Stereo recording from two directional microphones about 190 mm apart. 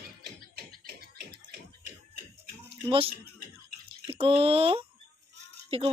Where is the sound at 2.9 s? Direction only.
30° right (ahead or behind).